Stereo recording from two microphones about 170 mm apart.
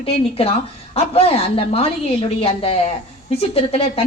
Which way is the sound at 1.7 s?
35° left (ahead or behind).